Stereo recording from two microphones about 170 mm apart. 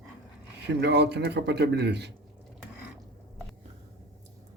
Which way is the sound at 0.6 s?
75° right (ahead or behind).